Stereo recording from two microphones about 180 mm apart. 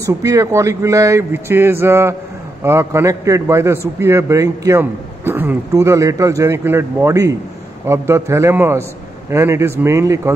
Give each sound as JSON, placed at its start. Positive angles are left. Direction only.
{"t": 0.0, "sound": "a man's voice", "side_deg": -20}